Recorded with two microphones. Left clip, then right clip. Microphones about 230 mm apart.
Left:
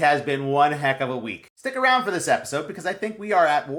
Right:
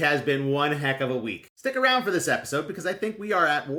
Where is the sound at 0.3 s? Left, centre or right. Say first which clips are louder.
Left 4 dB; centre.